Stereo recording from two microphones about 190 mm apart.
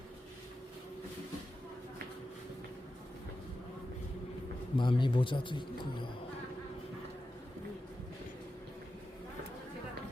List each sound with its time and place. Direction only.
4.8 s speech: 25° left (ahead or behind)